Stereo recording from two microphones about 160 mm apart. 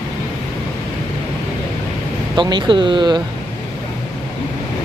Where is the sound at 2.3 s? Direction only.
30° right (ahead or behind).